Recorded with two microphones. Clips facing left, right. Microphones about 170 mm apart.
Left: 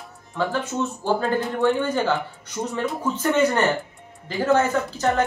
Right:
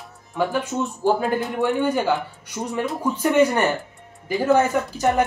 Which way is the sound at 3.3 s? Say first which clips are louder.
Right 2 dB; 10° right (ahead or behind).